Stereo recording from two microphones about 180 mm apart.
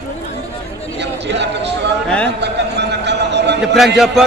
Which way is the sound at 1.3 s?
70° right (ahead or behind).